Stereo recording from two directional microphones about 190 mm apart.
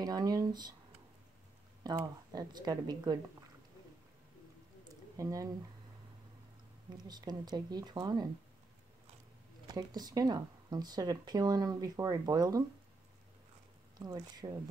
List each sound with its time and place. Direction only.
0.0 s speech: 20° right (ahead or behind)
1.8 s speech: 20° right (ahead or behind)
5.1 s speech: 15° right (ahead or behind)
7.0 s speech: 20° right (ahead or behind)
9.7 s speech: 20° right (ahead or behind)
13.9 s speech: 20° right (ahead or behind)